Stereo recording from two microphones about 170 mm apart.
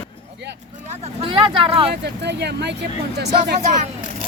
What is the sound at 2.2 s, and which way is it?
Speech, 80° right.